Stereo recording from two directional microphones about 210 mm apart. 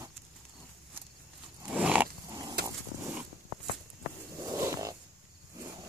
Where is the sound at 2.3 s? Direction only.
15° right (ahead or behind).